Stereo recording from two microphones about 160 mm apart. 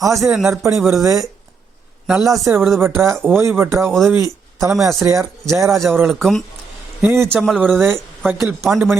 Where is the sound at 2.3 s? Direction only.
15° right (ahead or behind).